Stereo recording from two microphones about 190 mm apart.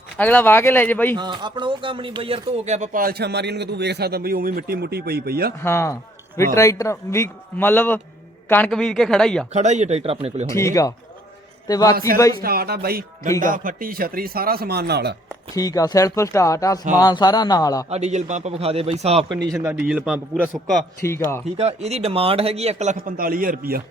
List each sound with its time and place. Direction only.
0.2 s a man's voice: 10° left (ahead or behind)
1.1 s speech: 25° right (ahead or behind); by 5.5 s 55° right (ahead or behind)
5.6 s a man's voice: 15° left (ahead or behind)
9.5 s a man's voice: 35° right (ahead or behind)
10.5 s a man's voice: 15° left (ahead or behind)
12.4 s speech: 50° right (ahead or behind)
15.5 s a man's voice: 20° left (ahead or behind)
17.8 s a man's voice: 35° right (ahead or behind)
19.5 s a man's voice: 10° right (ahead or behind)
21.0 s a man's voice: 15° left (ahead or behind)
21.6 s a man's voice: 35° right (ahead or behind); by 23.8 s 50° right (ahead or behind)